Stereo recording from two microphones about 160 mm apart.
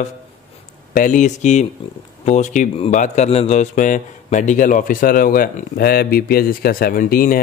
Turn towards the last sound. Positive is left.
turn(degrees=65)  # may be behind; listen again after turning